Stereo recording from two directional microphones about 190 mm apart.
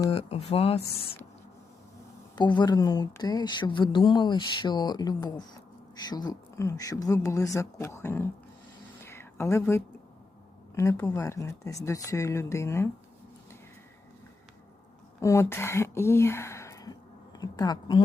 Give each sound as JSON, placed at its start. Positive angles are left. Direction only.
{"t": 0.1, "sound": "speech", "side_deg": 35}
{"t": 2.3, "sound": "speech", "side_deg": 25}
{"t": 9.0, "sound": "a sound", "side_deg": 15}
{"t": 10.8, "sound": "speech", "side_deg": 15}
{"t": 15.2, "sound": "speech", "side_deg": 15}